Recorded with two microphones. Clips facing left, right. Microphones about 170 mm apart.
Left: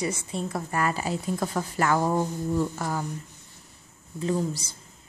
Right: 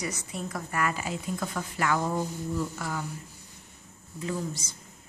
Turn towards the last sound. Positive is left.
turn(degrees=30)  # may be behind; listen again after turning